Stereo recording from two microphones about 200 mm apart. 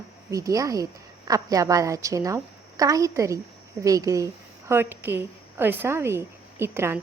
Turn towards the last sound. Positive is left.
turn(degrees=-10)  # may be behind; listen again after turning